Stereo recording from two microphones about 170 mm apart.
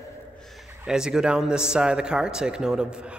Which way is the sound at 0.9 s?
5° right (ahead or behind).